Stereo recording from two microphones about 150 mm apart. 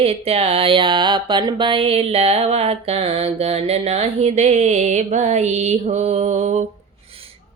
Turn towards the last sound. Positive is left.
turn(degrees=-50)  # may be behind; listen again after turning